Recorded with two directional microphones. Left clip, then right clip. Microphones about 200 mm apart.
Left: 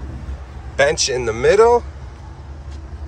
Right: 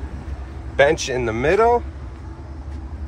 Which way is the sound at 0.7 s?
5° left (ahead or behind).